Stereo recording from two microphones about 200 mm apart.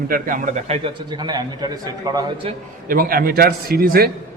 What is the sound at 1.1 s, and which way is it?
A man's voice, 20° right (ahead or behind).